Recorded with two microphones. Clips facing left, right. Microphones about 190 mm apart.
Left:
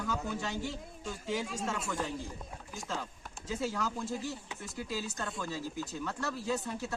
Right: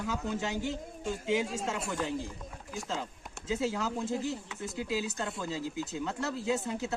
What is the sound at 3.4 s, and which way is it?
Speech, 20° right (ahead or behind).